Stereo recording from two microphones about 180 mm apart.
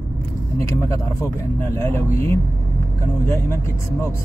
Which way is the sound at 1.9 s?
15° left (ahead or behind).